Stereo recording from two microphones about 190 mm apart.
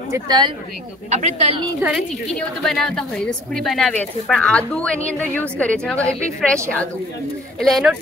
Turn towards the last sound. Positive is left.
turn(degrees=0)  # may be behind; listen again after turning